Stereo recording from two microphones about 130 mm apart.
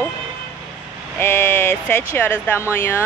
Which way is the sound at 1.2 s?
15° left (ahead or behind).